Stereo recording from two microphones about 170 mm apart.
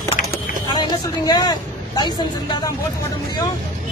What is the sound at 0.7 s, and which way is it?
Vehicle, 25° left (ahead or behind).